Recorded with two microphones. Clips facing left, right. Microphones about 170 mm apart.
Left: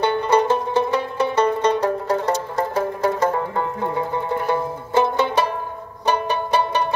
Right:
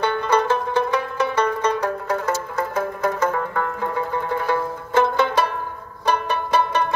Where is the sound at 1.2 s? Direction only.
30° left (ahead or behind).